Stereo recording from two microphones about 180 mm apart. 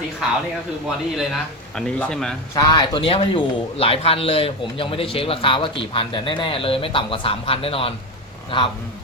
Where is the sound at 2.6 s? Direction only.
25° left (ahead or behind).